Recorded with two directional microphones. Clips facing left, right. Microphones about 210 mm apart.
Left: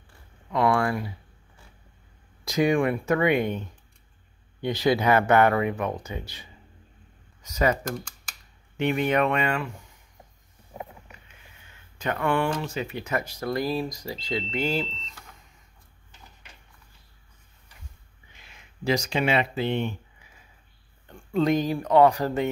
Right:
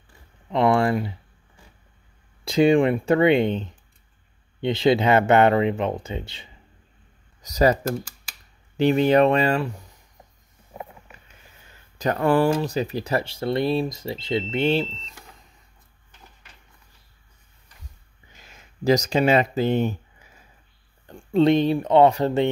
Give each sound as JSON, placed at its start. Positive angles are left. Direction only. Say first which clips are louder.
{"t": 0.5, "sound": "a sound", "louder": "right 4 dB", "side_deg": -25}
{"t": 2.4, "sound": "speech", "louder": "right 5 dB", "side_deg": -30}
{"t": 7.4, "sound": "speech", "louder": "right 5 dB", "side_deg": -35}
{"t": 11.2, "sound": "speech", "louder": "right 2 dB", "side_deg": -40}
{"t": 18.3, "sound": "speech", "louder": "right 3 dB", "side_deg": -40}
{"t": 21.1, "sound": "speech", "louder": "right 5 dB", "side_deg": -30}